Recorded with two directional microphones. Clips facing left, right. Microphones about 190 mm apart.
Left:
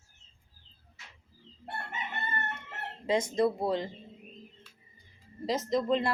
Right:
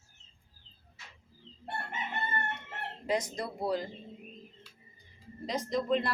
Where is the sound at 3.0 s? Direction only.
25° left (ahead or behind).